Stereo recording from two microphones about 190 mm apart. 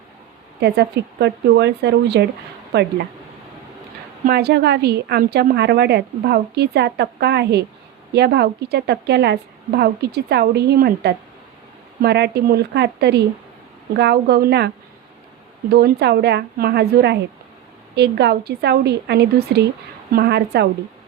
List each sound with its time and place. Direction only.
0.6 s a woman's voice: 60° right (ahead or behind)
4.3 s a woman's voice: 55° right (ahead or behind)
15.7 s a woman's voice: 60° right (ahead or behind)